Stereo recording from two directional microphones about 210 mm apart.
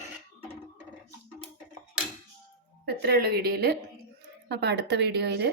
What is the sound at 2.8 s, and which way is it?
Speech, 50° right (ahead or behind).